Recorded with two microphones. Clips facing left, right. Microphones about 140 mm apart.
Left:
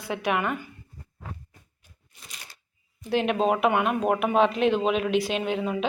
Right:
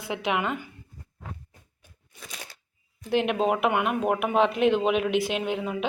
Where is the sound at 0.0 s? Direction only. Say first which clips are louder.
Left 1 dB; 20° right (ahead or behind).